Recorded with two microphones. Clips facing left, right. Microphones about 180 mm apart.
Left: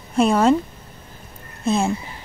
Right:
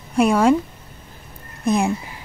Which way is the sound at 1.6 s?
15° right (ahead or behind).